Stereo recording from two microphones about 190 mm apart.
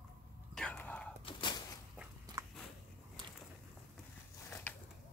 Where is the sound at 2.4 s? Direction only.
15° right (ahead or behind).